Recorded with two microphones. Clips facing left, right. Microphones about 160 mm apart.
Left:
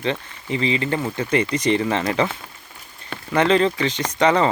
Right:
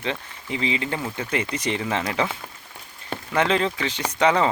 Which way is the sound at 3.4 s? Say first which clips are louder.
Left 5 dB; 10° right (ahead or behind).